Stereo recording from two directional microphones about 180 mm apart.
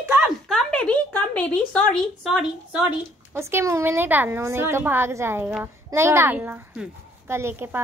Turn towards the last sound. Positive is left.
turn(degrees=-10)  # may be behind; listen again after turning